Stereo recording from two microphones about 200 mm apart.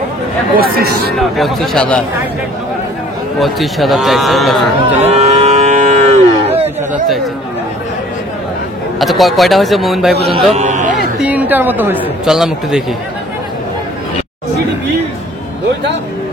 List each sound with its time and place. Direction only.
0.6 s speech: 50° right (ahead or behind)
1.1 s a man's voice: centre (ahead or behind)
3.3 s a man's voice: centre (ahead or behind)
4.9 s cattle: 35° right (ahead or behind)
9.0 s a man's voice: centre (ahead or behind)
10.5 s speech: 35° right (ahead or behind)
11.1 s a woman's voice: 5° right (ahead or behind)